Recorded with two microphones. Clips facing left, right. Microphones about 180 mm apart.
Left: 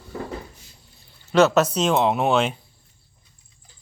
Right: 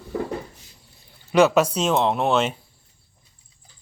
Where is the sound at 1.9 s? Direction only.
5° left (ahead or behind).